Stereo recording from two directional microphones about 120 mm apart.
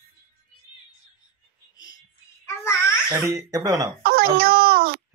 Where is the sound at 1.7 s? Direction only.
30° left (ahead or behind).